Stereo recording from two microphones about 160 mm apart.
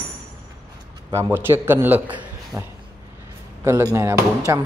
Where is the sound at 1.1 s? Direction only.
15° right (ahead or behind).